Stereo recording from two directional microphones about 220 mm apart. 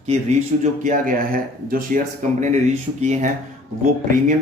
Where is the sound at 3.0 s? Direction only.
35° right (ahead or behind).